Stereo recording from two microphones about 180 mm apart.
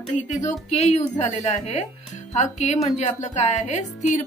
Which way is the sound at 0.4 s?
40° left (ahead or behind).